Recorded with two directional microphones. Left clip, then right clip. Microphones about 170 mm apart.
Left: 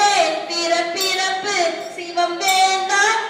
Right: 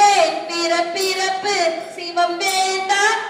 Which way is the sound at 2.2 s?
25° right (ahead or behind).